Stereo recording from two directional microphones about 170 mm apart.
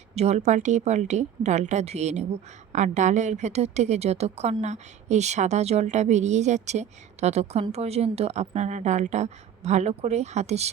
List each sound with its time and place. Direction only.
0.1 s a woman's voice: 40° right (ahead or behind)